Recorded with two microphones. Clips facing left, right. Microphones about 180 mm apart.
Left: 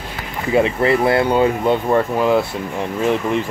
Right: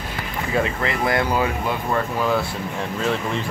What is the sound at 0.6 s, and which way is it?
Speech, 25° left (ahead or behind).